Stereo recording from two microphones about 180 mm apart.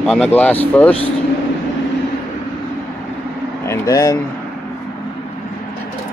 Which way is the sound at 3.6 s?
20° left (ahead or behind).